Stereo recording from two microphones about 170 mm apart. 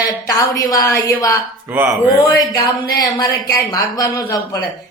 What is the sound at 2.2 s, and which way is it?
Speech, 20° left (ahead or behind).